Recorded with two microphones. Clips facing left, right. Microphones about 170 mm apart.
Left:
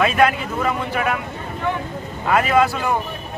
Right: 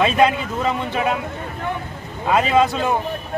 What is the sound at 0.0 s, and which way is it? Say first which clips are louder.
A man's voice: right 1 dB; 20° right (ahead or behind).